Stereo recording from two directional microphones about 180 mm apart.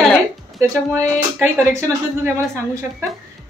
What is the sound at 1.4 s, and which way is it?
A woman's voice, 15° right (ahead or behind).